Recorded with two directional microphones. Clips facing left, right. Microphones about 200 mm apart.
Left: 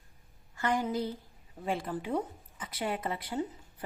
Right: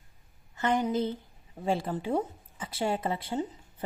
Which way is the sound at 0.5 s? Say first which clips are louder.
Right 3 dB; 20° right (ahead or behind).